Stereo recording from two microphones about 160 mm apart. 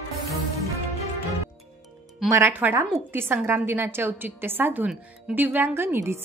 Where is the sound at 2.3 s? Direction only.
15° right (ahead or behind).